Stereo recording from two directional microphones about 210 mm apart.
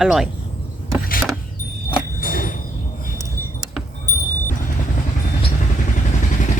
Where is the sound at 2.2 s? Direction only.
40° left (ahead or behind).